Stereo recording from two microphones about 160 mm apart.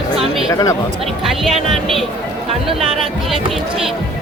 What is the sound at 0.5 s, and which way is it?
Speech, 20° left (ahead or behind).